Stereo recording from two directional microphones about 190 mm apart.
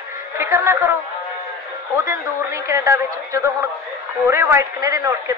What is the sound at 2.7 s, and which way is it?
A man's voice, 15° right (ahead or behind).